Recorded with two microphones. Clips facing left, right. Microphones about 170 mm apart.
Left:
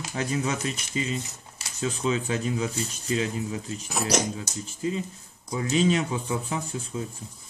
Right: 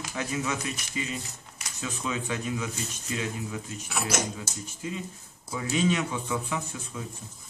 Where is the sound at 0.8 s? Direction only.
25° left (ahead or behind).